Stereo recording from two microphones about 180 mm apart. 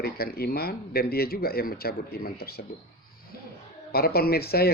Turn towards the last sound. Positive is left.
turn(degrees=60)  # may be behind; listen again after turning